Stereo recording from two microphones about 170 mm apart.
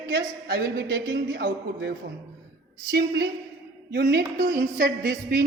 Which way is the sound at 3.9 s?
80° right.